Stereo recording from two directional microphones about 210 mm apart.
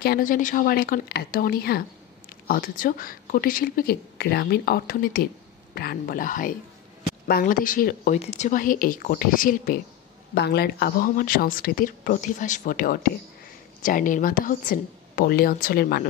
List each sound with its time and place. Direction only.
0.0 s speech: 45° left (ahead or behind)
10.3 s speech: 50° left (ahead or behind)